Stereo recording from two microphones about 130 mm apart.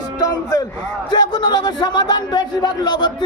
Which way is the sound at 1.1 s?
35° left (ahead or behind).